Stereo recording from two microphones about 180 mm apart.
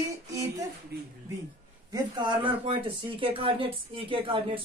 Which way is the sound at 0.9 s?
60° right (ahead or behind).